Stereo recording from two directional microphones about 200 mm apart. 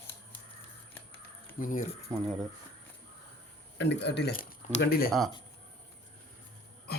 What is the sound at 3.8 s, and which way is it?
Speech, 60° left (ahead or behind).